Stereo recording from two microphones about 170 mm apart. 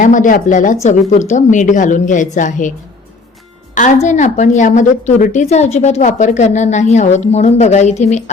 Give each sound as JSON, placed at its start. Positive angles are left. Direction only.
{"t": 0.0, "sound": "a woman's voice", "side_deg": 50}
{"t": 4.0, "sound": "a woman's voice", "side_deg": 45}